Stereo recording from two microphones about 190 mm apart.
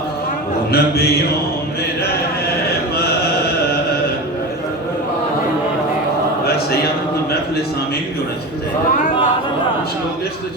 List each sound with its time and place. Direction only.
0.7 s mantra: 55° left (ahead or behind)